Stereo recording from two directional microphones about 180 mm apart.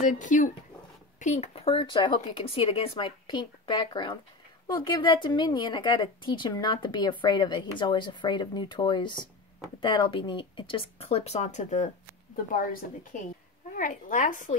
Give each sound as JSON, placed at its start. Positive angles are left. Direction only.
{"t": 0.0, "sound": "a woman's voice", "side_deg": 45}
{"t": 13.7, "sound": "a woman's voice", "side_deg": 45}